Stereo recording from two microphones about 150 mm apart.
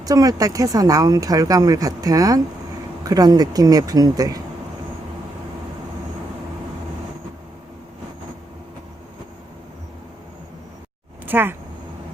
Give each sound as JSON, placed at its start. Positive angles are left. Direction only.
{"t": 0.0, "sound": "speech", "side_deg": -25}
{"t": 11.3, "sound": "speech", "side_deg": -15}